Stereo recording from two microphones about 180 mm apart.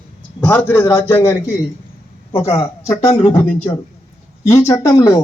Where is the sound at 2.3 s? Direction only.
30° left (ahead or behind).